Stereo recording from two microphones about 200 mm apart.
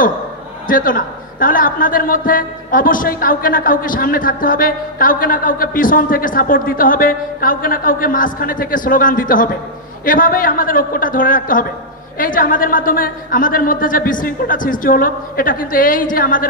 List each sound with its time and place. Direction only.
0.7 s a man's voice: 45° left (ahead or behind)